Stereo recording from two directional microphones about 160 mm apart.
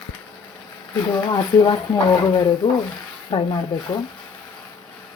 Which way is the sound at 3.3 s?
35° left (ahead or behind).